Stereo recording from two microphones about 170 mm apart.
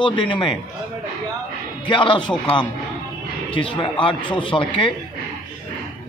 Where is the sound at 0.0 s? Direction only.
30° left (ahead or behind).